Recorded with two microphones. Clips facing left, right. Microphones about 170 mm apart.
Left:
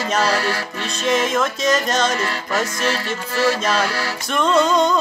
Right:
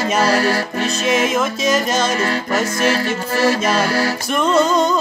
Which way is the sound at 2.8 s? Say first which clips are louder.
Right 5 dB; 45° right (ahead or behind).